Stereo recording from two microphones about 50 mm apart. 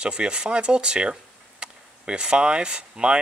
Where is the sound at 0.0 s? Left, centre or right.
Centre.